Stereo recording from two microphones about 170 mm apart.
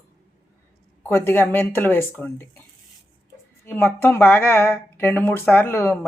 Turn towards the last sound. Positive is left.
turn(degrees=15)  # may be behind; listen again after turning